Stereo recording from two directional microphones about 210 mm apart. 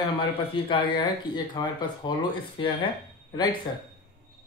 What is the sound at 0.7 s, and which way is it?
Speech, 25° left (ahead or behind).